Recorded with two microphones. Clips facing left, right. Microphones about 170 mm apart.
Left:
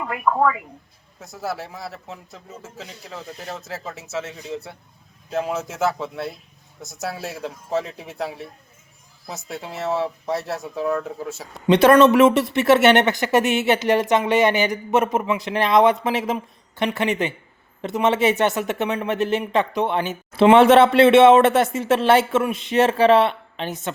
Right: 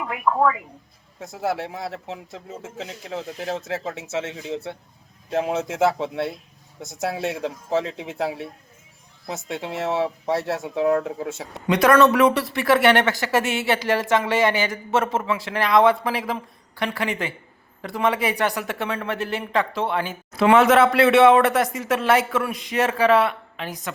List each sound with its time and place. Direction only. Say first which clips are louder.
0.0 s speech: left 1 dB; centre (ahead or behind)
1.3 s speech: right 3 dB; 25° right (ahead or behind)
11.7 s speech: left 3 dB; 25° left (ahead or behind)